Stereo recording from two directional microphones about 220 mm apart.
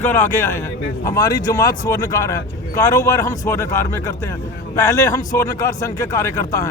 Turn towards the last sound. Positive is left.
turn(degrees=15)  # may be behind; listen again after turning